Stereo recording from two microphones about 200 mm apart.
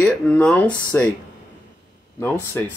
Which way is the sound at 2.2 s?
10° left (ahead or behind).